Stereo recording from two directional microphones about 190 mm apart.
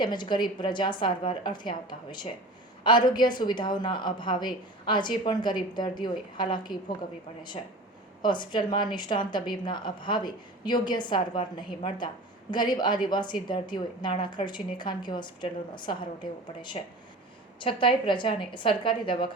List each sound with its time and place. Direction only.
0.0 s a woman's voice: 25° left (ahead or behind)
8.2 s a woman's voice: 25° left (ahead or behind)
17.6 s a woman's voice: 25° left (ahead or behind)